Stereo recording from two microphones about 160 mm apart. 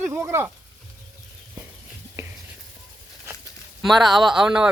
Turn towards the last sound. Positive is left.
turn(degrees=-5)  # may be behind; listen again after turning